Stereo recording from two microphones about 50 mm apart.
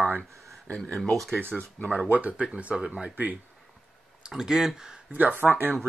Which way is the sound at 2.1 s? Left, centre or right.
Right.